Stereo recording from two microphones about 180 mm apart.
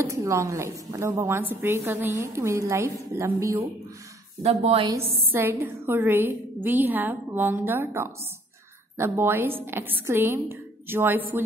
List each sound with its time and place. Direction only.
0.1 s a woman's voice: 15° right (ahead or behind)
4.4 s a woman's voice: 35° right (ahead or behind)
4.8 s a woman's voice: 15° right (ahead or behind)